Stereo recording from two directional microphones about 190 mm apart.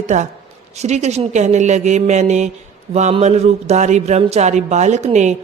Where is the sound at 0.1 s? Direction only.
35° right (ahead or behind).